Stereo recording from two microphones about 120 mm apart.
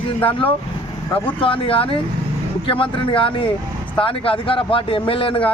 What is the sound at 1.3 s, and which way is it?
Speech, 45° left (ahead or behind).